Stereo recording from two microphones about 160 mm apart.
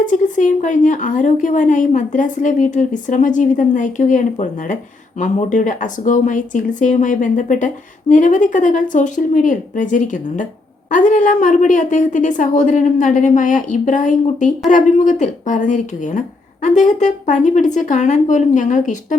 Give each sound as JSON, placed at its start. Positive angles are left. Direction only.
{"t": 0.0, "sound": "a woman's voice", "side_deg": 50}